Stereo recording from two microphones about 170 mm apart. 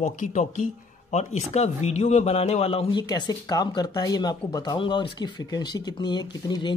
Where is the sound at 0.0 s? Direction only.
50° left (ahead or behind).